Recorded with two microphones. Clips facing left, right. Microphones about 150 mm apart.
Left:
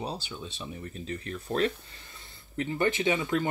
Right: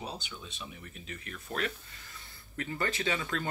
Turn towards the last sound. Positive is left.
turn(degrees=20)  # may be behind; listen again after turning